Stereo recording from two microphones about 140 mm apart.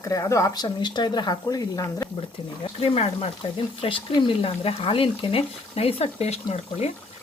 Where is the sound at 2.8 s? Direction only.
45° left (ahead or behind).